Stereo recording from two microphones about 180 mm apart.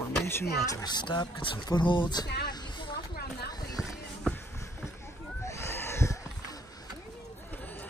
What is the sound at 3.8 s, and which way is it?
Music, centre (ahead or behind).